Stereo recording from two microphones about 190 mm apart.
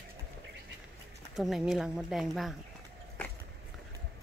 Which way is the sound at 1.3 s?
Centre (ahead or behind).